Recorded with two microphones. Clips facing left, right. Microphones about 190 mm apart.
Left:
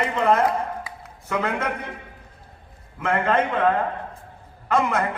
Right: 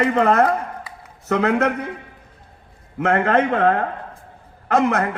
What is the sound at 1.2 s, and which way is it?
Speech, 70° right (ahead or behind).